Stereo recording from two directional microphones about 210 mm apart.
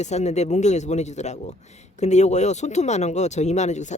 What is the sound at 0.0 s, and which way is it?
Speech, 30° left (ahead or behind).